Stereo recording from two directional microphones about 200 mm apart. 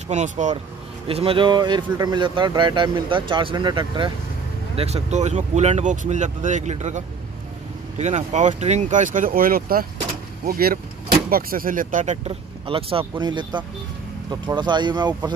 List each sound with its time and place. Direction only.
0.1 s speech: 35° right (ahead or behind)
8.0 s speech: 35° right (ahead or behind)